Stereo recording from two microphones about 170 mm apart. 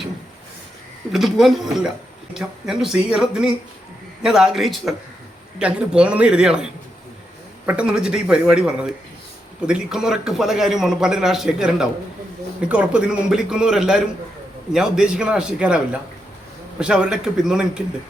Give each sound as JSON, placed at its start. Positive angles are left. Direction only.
{"t": 1.1, "sound": "a man's voice", "side_deg": 0}
{"t": 7.7, "sound": "a man's voice", "side_deg": -5}